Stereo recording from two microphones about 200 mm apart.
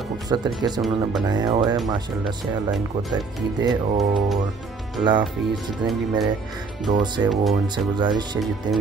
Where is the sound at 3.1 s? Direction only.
20° right (ahead or behind).